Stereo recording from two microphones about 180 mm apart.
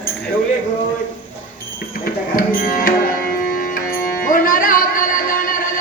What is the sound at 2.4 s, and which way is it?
Tabla, 50° left (ahead or behind).